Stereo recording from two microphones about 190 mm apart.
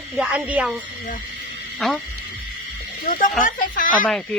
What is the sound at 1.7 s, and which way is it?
Speech, centre (ahead or behind).